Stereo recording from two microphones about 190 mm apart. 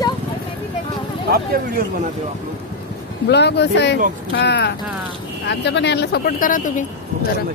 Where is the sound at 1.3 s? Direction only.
50° right (ahead or behind).